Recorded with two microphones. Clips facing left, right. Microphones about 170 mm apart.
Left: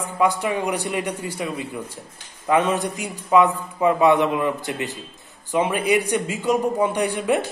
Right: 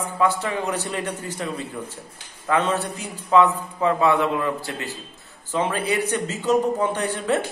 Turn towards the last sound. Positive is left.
turn(degrees=15)  # may be behind; listen again after turning